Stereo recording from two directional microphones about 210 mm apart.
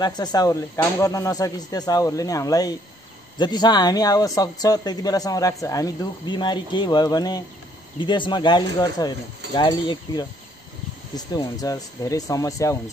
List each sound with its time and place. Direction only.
0.0 s a man's voice: 20° left (ahead or behind)